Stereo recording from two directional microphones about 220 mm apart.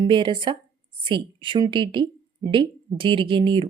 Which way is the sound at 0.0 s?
20° right (ahead or behind).